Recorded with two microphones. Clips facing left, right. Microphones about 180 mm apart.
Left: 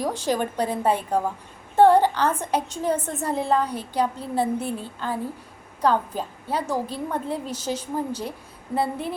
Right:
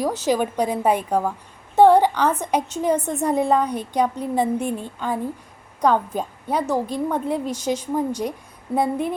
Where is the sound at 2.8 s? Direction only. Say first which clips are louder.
Right 4 dB; 15° right (ahead or behind).